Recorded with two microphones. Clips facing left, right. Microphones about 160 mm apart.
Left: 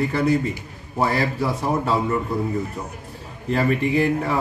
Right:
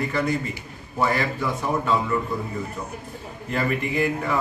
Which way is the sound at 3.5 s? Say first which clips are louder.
Left 5 dB; 35° left (ahead or behind).